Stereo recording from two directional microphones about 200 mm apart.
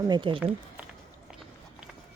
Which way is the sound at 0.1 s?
25° right (ahead or behind).